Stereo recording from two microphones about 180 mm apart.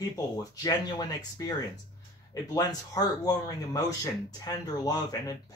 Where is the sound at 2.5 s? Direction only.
20° left (ahead or behind).